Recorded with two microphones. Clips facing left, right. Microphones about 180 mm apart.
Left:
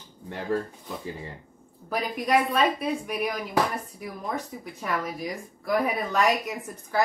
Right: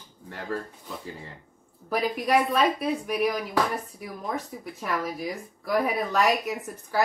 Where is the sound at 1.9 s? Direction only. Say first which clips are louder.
Right 1 dB; centre (ahead or behind).